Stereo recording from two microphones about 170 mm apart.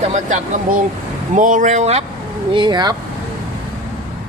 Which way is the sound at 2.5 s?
25° right (ahead or behind).